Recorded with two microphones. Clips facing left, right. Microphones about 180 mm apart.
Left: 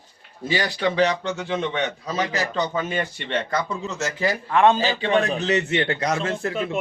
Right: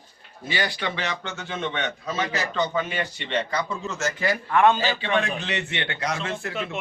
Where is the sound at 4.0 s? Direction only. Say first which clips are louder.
Left 1 dB; 35° left (ahead or behind).